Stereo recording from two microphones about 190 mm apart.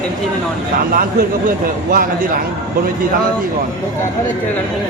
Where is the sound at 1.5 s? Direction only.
50° right (ahead or behind).